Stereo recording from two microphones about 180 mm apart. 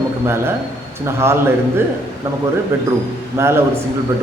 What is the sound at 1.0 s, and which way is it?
Speech, 15° right (ahead or behind).